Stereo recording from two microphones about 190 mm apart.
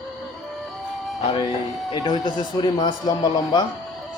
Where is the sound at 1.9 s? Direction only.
20° left (ahead or behind).